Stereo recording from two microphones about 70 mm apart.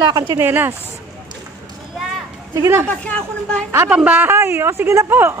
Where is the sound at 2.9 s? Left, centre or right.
Centre.